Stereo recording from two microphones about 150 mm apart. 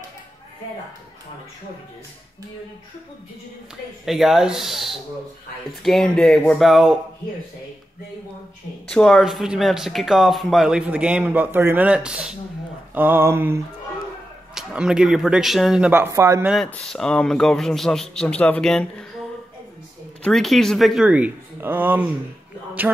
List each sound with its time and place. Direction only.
4.0 s speech: centre (ahead or behind)
8.8 s speech: 5° left (ahead or behind)
12.9 s a sound: 15° right (ahead or behind)
14.5 s speech: 5° right (ahead or behind)
15.9 s a sound: 15° right (ahead or behind)
16.4 s speech: centre (ahead or behind)
20.2 s speech: centre (ahead or behind)